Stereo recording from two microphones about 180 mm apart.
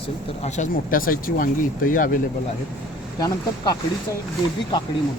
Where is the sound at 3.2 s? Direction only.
20° left (ahead or behind).